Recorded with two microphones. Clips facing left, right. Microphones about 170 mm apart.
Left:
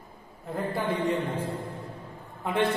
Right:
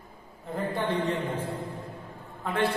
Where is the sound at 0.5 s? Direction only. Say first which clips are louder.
Even; 10° left (ahead or behind).